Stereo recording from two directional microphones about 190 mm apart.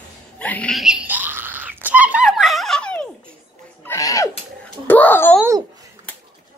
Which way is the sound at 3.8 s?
15° left (ahead or behind).